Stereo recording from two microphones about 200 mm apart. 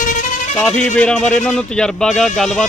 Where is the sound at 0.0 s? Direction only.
40° left (ahead or behind).